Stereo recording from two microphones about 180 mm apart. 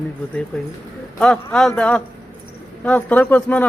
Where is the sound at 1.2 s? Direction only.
5° left (ahead or behind).